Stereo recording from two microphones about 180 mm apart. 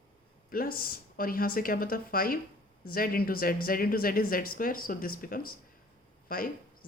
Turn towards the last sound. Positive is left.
turn(degrees=55)  # may be behind; listen again after turning